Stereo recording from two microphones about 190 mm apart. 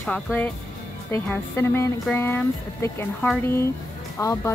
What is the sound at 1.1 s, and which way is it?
Speech, 10° left (ahead or behind).